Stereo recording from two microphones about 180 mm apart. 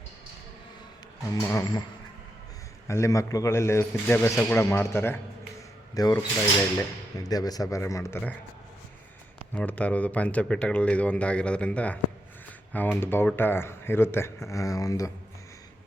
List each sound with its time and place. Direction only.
1.4 s speech: 15° left (ahead or behind)
2.8 s speech: 15° left (ahead or behind)
7.3 s speech: 20° left (ahead or behind)
9.6 s speech: 10° left (ahead or behind)